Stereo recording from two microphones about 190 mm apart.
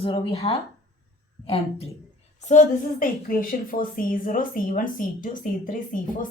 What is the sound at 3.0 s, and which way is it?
Speech, 45° left (ahead or behind).